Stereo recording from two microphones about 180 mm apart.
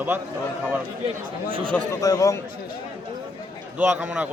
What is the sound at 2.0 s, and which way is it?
Speech, 20° left (ahead or behind).